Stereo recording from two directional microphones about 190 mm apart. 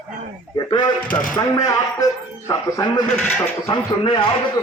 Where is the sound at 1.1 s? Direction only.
10° left (ahead or behind).